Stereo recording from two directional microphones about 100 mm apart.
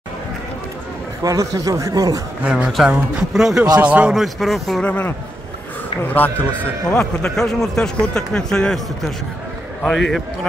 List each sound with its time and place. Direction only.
1.2 s speech: 35° right (ahead or behind)
2.4 s a man's voice: 10° right (ahead or behind)
4.8 s a man's voice: 15° left (ahead or behind)
6.1 s a man's voice: 20° left (ahead or behind)